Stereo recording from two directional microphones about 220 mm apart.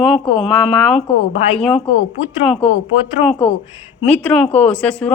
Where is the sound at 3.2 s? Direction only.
Centre (ahead or behind).